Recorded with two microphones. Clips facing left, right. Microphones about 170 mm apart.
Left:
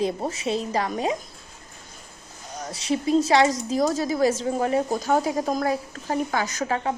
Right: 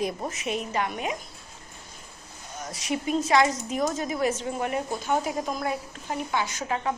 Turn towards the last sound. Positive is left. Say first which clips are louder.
# left 3 dB
turn(degrees=40)  # may be behind; listen again after turning